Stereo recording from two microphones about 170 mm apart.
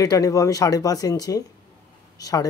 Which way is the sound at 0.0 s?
20° left (ahead or behind).